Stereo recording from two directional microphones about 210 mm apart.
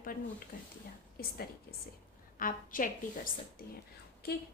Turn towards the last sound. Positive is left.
turn(degrees=45)  # may be behind; listen again after turning